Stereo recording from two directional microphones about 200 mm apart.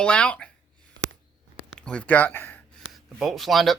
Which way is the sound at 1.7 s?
5° left (ahead or behind).